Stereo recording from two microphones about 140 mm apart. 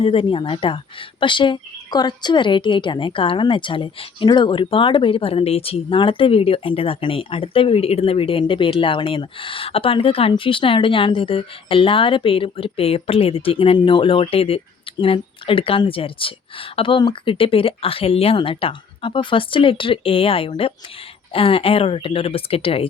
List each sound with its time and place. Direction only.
0.0 s a woman's voice: 40° left (ahead or behind)